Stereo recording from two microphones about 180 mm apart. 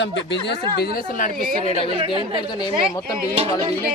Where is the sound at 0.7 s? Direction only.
55° left (ahead or behind).